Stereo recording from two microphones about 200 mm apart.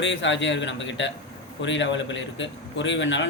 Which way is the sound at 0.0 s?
65° left (ahead or behind).